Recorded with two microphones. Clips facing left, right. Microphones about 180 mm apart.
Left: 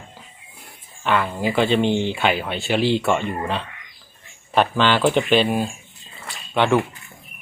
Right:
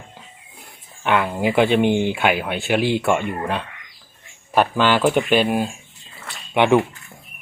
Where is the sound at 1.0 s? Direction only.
15° right (ahead or behind).